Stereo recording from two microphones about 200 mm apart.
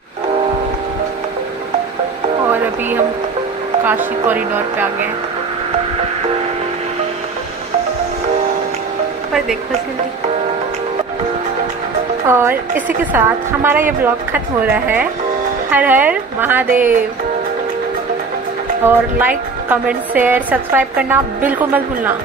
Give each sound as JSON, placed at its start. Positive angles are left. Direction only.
{"t": 3.8, "sound": "a woman's voice", "side_deg": -10}
{"t": 12.3, "sound": "a woman's voice", "side_deg": -10}
{"t": 18.9, "sound": "a woman's voice", "side_deg": -10}